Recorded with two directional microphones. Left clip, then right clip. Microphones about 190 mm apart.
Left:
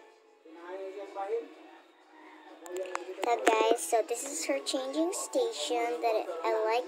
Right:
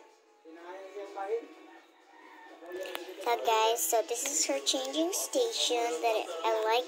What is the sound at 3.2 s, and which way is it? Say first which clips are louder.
A child's voice: left 1 dB; 10° left (ahead or behind).